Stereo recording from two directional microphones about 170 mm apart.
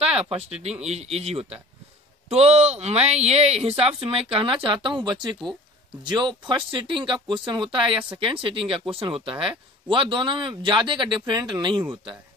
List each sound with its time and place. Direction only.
0.0 s speech: 35° right (ahead or behind)